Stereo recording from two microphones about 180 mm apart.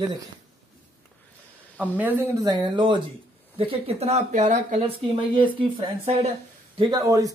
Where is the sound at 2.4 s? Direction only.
25° right (ahead or behind).